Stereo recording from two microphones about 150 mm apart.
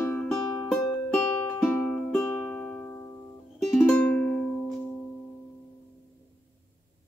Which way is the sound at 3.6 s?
Centre (ahead or behind).